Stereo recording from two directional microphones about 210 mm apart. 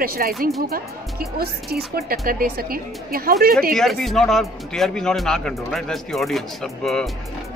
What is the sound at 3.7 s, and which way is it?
Speech, centre (ahead or behind).